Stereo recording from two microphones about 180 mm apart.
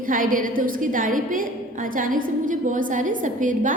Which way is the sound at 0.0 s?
50° right (ahead or behind).